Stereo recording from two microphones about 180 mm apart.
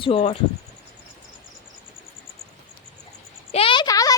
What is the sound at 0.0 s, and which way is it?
Speech, 30° left (ahead or behind).